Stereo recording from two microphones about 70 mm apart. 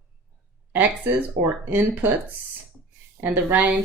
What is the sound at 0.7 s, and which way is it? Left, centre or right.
A woman's voice, right.